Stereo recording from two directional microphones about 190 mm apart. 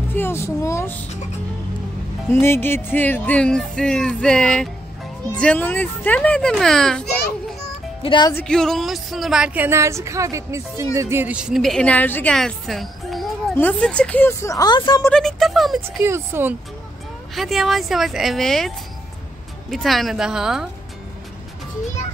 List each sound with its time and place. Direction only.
0.1 s speech: 10° left (ahead or behind)
2.4 s a woman's voice: 10° left (ahead or behind)
8.0 s speech: 25° left (ahead or behind)
8.4 s a woman's voice: 5° left (ahead or behind); by 15.0 s 20° left (ahead or behind)
15.0 s a woman's voice: centre (ahead or behind)
16.0 s speech: 10° right (ahead or behind)
17.4 s a woman's voice: centre (ahead or behind)
19.7 s a woman's voice: centre (ahead or behind)